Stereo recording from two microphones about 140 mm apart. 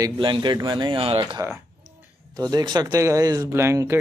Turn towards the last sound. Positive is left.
turn(degrees=-20)  # may be behind; listen again after turning